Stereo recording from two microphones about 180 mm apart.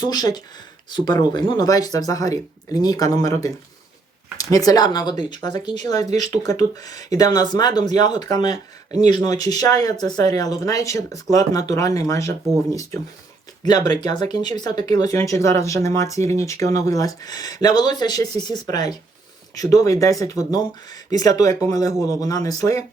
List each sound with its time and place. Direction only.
0.0 s speech: 20° left (ahead or behind)
8.4 s speech: 40° right (ahead or behind)
9.0 s speech: 20° left (ahead or behind)